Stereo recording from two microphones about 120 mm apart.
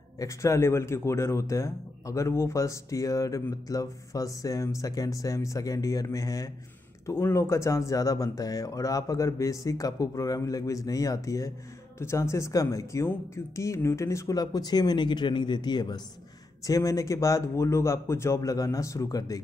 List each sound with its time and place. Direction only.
0.2 s speech: 25° left (ahead or behind)